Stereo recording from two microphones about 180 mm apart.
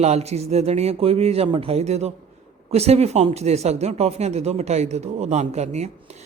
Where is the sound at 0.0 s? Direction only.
35° right (ahead or behind).